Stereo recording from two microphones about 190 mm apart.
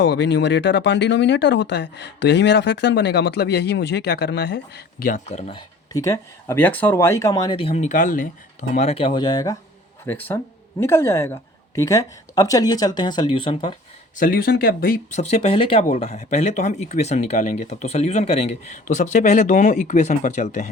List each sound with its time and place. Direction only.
0.0 s speech: 65° left (ahead or behind); by 9.6 s 20° left (ahead or behind)
10.1 s speech: 10° left (ahead or behind); by 13.7 s 30° left (ahead or behind)
14.2 s speech: 50° left (ahead or behind)
15.3 s speech: 30° left (ahead or behind)